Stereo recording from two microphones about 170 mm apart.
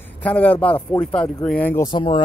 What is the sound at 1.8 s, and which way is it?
Speech, 30° left (ahead or behind).